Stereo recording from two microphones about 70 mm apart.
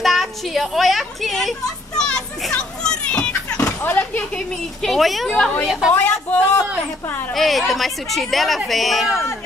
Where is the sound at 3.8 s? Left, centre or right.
Left.